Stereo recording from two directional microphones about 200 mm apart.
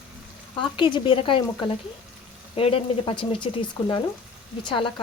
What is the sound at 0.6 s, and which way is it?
Speech, 25° left (ahead or behind).